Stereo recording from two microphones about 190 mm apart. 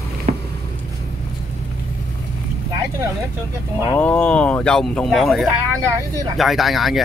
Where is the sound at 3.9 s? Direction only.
5° left (ahead or behind).